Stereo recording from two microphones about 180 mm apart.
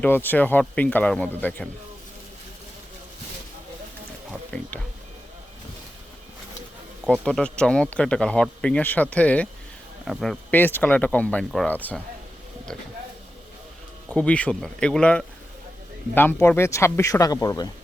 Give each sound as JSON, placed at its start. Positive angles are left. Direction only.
{"t": 0.0, "sound": "speech", "side_deg": 10}
{"t": 4.3, "sound": "music", "side_deg": 5}
{"t": 7.0, "sound": "speech", "side_deg": 0}
{"t": 14.1, "sound": "speech", "side_deg": 5}